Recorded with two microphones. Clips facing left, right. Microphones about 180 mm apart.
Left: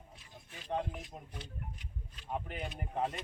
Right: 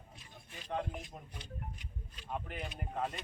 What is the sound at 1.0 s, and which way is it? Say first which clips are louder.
Speech: left 2 dB; 5° left (ahead or behind).